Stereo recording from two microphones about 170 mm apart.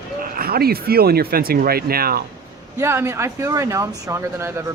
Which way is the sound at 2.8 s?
15° right (ahead or behind).